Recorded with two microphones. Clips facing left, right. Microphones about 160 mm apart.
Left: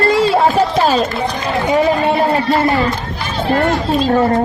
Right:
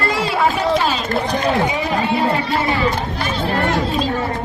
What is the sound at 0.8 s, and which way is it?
Run, 40° left (ahead or behind).